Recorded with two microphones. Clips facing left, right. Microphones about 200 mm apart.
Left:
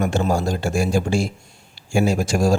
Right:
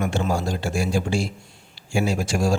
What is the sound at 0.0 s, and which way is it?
Speech, 40° left (ahead or behind).